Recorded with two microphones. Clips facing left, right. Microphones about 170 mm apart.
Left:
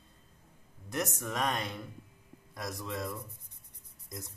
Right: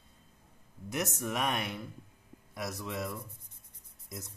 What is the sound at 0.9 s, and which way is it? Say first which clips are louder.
Speech: even; 15° right (ahead or behind).